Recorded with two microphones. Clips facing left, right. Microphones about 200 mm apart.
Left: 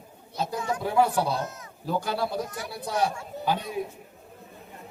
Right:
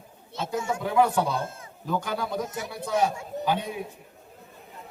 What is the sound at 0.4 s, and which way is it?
Speech, 25° right (ahead or behind).